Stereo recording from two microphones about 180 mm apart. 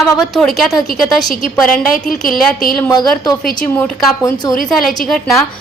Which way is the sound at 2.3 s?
Centre (ahead or behind).